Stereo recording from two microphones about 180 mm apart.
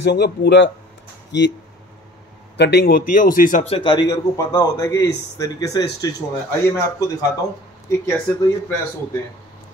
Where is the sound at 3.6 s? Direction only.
30° left (ahead or behind).